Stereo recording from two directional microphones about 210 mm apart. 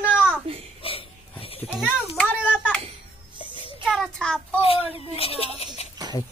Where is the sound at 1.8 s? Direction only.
5° left (ahead or behind).